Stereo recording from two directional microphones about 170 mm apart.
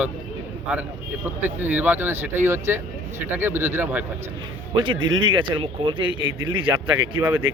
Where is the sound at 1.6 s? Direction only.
10° right (ahead or behind).